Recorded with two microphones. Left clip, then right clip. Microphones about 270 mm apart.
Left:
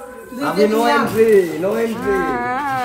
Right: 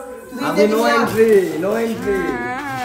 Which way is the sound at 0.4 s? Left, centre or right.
Centre.